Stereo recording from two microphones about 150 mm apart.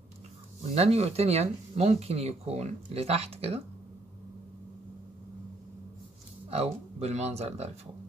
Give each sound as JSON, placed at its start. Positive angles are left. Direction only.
{"t": 0.7, "sound": "speech", "side_deg": -45}
{"t": 6.5, "sound": "speech", "side_deg": -45}